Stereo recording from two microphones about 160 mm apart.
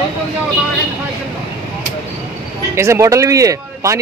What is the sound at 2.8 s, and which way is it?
Speech, 15° right (ahead or behind).